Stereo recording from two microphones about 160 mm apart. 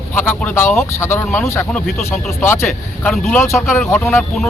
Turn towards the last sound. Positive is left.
turn(degrees=15)  # may be behind; listen again after turning